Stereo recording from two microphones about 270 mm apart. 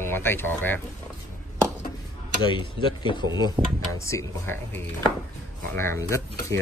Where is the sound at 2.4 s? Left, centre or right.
Centre.